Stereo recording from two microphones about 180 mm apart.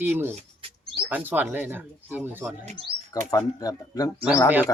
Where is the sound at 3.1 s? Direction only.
20° left (ahead or behind).